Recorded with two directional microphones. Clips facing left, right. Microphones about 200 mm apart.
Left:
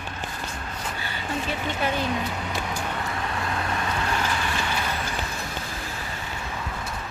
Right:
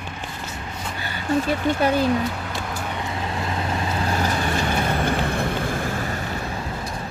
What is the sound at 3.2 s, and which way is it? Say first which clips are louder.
Vehicle: right 2 dB; 25° right (ahead or behind).